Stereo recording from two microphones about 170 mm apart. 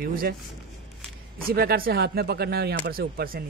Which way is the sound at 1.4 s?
65° right (ahead or behind).